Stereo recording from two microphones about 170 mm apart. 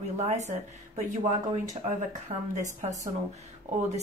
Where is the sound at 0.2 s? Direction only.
40° right (ahead or behind).